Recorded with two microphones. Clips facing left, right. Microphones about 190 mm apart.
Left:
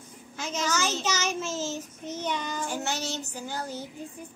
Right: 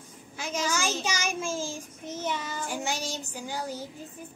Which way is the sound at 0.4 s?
10° right (ahead or behind).